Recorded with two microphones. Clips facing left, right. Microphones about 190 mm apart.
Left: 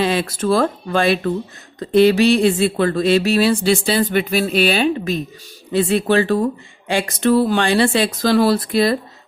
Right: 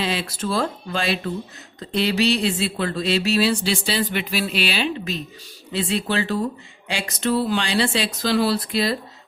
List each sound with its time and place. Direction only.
0.0 s speech: 50° left (ahead or behind)